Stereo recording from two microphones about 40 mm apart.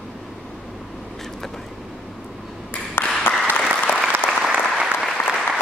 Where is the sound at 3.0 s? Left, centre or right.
Left.